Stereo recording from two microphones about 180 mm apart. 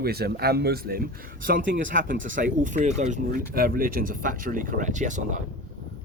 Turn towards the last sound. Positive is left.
turn(degrees=-45)  # may be behind; listen again after turning